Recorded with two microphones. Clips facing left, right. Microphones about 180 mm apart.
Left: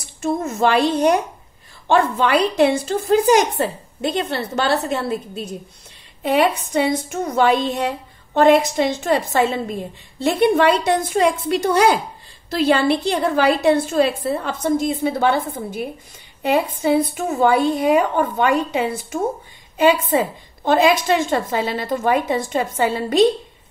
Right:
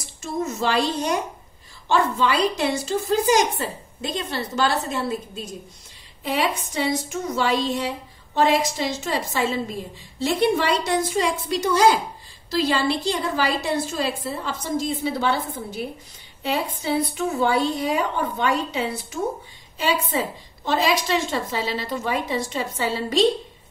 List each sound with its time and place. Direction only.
0.0 s a woman's voice: 55° left (ahead or behind)